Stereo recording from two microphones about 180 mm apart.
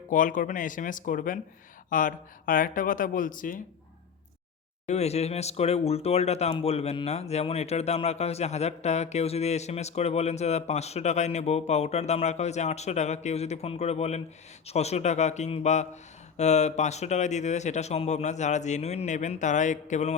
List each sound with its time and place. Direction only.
0.1 s speech: 45° left (ahead or behind)
4.9 s speech: 35° left (ahead or behind)